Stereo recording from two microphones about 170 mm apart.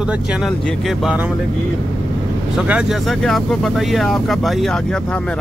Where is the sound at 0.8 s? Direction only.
Centre (ahead or behind).